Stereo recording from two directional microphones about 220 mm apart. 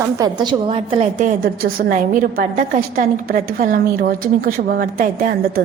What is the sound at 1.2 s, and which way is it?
A woman's voice, 40° right (ahead or behind).